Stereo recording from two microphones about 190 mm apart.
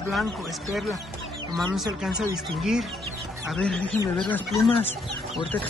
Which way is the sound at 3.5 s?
5° left (ahead or behind).